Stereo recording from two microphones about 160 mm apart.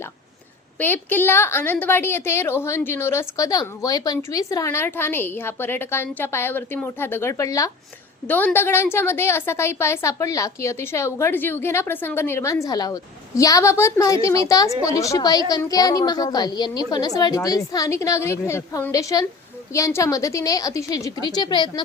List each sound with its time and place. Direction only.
0.8 s a woman's voice: 10° left (ahead or behind); by 21.7 s 30° left (ahead or behind)